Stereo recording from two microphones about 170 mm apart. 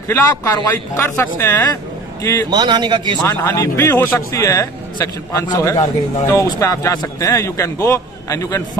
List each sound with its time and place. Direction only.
0.1 s a man's voice: 15° left (ahead or behind)
2.5 s speech: 25° right (ahead or behind)
3.4 s a man's voice: 15° left (ahead or behind)